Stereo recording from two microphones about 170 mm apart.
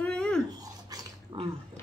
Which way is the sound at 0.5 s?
20° right (ahead or behind).